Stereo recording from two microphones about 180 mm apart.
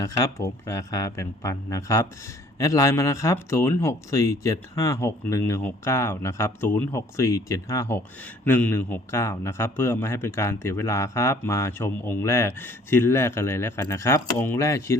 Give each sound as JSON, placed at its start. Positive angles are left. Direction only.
{"t": 0.0, "sound": "a man's voice", "side_deg": 15}